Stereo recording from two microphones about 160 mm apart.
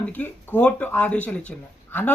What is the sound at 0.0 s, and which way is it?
Speech, 10° left (ahead or behind).